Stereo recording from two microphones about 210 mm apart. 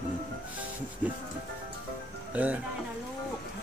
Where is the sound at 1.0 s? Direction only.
5° right (ahead or behind).